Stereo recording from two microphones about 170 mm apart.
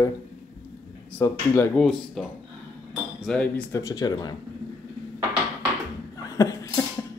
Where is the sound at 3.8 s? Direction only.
20° left (ahead or behind).